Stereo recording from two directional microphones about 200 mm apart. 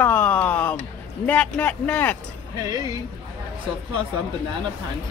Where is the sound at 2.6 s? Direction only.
20° right (ahead or behind).